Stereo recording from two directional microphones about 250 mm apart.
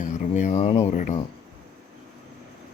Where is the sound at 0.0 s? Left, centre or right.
Left.